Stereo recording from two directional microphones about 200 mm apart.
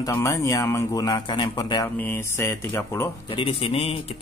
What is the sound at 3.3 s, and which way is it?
Speech, 25° left (ahead or behind).